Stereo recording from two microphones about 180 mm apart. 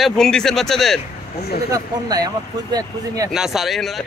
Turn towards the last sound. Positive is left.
turn(degrees=0)  # may be behind; listen again after turning